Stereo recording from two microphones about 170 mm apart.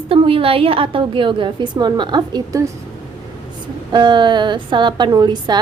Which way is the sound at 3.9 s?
25° right (ahead or behind).